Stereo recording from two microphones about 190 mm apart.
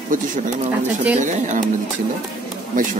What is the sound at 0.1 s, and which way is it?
Speech, 45° right (ahead or behind).